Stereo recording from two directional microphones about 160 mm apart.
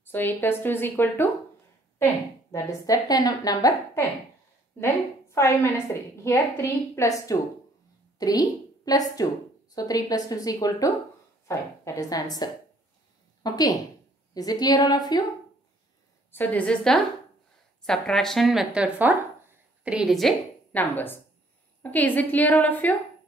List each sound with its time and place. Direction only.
0.0 s a woman's voice: 10° left (ahead or behind)
2.5 s a woman's voice: 20° left (ahead or behind)
16.3 s a woman's voice: 10° left (ahead or behind)
20.8 s a woman's voice: 10° left (ahead or behind)